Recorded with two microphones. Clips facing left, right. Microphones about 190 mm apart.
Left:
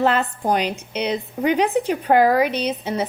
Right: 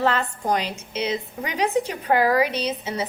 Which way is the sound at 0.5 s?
65° left (ahead or behind).